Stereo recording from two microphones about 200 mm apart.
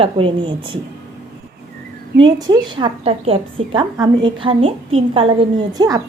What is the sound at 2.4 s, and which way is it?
Speech, 20° right (ahead or behind).